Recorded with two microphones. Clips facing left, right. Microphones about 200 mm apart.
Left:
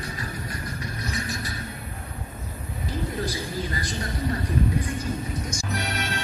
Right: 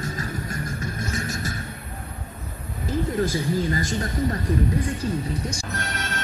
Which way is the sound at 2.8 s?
45° right (ahead or behind).